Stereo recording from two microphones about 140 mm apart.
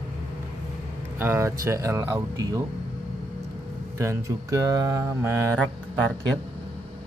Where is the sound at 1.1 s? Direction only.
15° right (ahead or behind).